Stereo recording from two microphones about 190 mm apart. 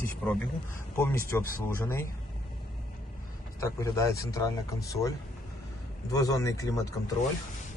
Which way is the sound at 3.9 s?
15° left (ahead or behind).